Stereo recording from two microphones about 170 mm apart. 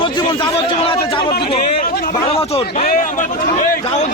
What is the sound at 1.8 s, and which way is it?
Speech, 60° left (ahead or behind).